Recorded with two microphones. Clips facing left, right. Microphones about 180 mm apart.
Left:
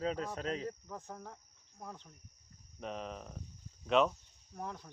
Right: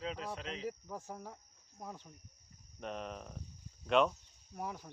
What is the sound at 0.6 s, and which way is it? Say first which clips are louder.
Speech: right 1 dB; 10° right (ahead or behind).